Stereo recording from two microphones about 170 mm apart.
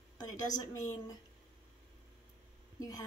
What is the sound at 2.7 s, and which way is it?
Speech, 20° left (ahead or behind).